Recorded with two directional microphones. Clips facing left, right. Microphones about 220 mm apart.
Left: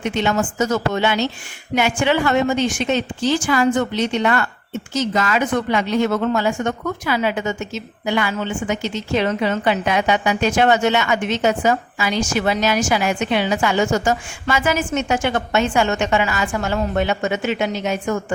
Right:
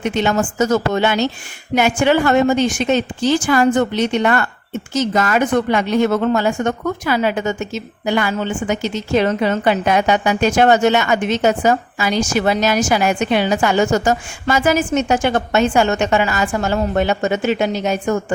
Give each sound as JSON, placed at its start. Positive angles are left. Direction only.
{"t": 0.0, "sound": "speech", "side_deg": -45}